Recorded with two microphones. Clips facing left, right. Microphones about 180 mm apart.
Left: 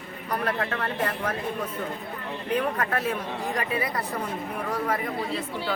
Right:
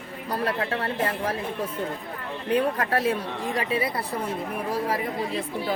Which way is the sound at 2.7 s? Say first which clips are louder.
Right 3 dB; 35° right (ahead or behind).